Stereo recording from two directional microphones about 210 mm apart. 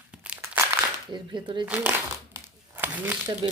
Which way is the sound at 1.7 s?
10° right (ahead or behind).